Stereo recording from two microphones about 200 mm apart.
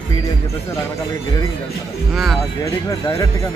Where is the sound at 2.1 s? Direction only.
Centre (ahead or behind).